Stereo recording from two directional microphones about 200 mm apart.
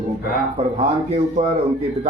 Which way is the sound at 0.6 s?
30° right (ahead or behind).